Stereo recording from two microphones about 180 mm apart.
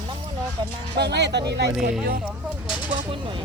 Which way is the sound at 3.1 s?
30° right (ahead or behind).